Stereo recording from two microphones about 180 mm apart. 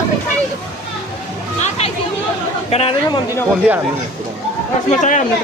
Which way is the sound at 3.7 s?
10° right (ahead or behind).